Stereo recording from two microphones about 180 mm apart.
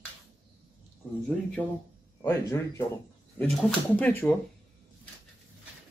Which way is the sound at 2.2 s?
15° left (ahead or behind).